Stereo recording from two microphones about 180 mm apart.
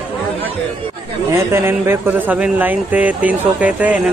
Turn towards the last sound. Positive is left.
turn(degrees=-5)  # may be behind; listen again after turning